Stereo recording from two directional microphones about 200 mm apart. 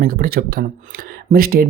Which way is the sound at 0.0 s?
50° right (ahead or behind).